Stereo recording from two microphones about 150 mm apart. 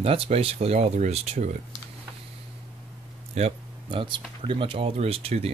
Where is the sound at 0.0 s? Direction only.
40° right (ahead or behind).